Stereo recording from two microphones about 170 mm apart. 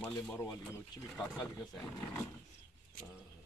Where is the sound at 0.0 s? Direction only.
15° left (ahead or behind).